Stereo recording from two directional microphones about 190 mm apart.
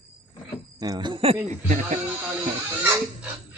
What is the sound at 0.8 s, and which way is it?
Speech, 20° right (ahead or behind).